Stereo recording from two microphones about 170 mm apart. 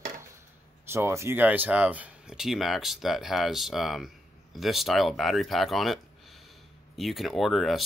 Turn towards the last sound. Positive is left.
turn(degrees=0)  # may be behind; listen again after turning